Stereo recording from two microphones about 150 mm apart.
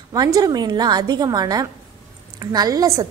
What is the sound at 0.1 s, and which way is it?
A woman's voice, 25° right (ahead or behind).